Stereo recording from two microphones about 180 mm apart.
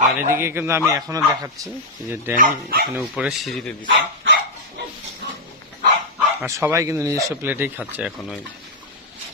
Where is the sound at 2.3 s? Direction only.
50° right (ahead or behind).